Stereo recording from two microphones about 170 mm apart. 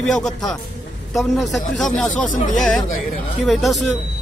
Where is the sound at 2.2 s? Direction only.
50° left (ahead or behind).